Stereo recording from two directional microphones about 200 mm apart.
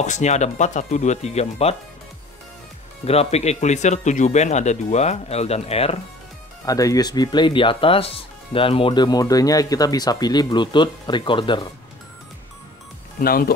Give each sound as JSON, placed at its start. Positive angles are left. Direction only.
{"t": 0.0, "sound": "speech", "side_deg": 35}
{"t": 3.1, "sound": "speech", "side_deg": 30}
{"t": 6.6, "sound": "speech", "side_deg": 15}
{"t": 13.2, "sound": "speech", "side_deg": 45}